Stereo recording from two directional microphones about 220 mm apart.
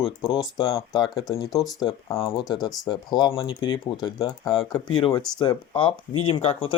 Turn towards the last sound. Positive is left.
turn(degrees=25)  # may be behind; listen again after turning